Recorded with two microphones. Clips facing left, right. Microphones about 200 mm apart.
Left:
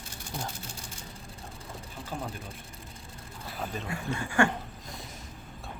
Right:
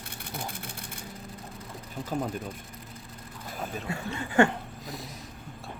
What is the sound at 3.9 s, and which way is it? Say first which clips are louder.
Speech: even; 25° right (ahead or behind).